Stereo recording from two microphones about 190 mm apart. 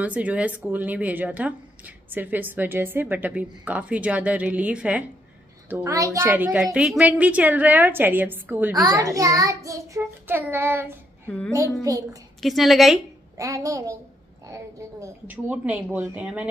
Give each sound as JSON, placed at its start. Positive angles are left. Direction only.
{"t": 0.0, "sound": "a woman's voice", "side_deg": -5}
{"t": 11.2, "sound": "a woman's voice", "side_deg": 5}
{"t": 11.5, "sound": "a woman's voice", "side_deg": -15}
{"t": 12.4, "sound": "a woman's voice", "side_deg": 0}
{"t": 13.4, "sound": "a woman's voice", "side_deg": -15}